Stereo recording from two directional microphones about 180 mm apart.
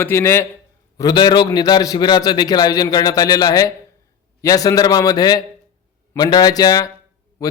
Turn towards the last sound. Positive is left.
turn(degrees=20)  # may be behind; listen again after turning